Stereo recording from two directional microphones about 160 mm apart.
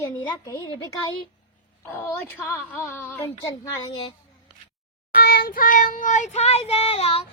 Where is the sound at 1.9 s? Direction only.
20° left (ahead or behind).